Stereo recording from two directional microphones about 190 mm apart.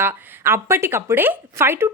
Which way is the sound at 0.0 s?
10° right (ahead or behind).